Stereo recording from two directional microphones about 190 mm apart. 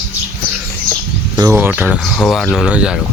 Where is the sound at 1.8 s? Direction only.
5° right (ahead or behind).